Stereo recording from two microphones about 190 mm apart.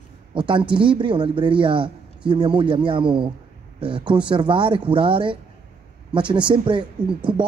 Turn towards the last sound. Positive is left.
turn(degrees=-25)  # may be behind; listen again after turning